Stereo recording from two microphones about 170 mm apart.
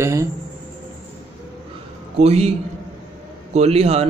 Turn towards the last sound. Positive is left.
turn(degrees=-35)  # may be behind; listen again after turning